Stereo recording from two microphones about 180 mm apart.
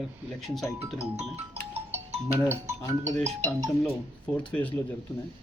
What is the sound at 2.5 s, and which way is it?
Speech, 15° right (ahead or behind).